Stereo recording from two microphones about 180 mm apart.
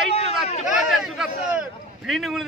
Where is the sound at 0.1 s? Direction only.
35° left (ahead or behind).